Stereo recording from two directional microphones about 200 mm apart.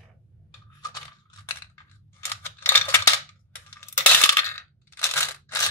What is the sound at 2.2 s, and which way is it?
Typewriter, 10° left (ahead or behind).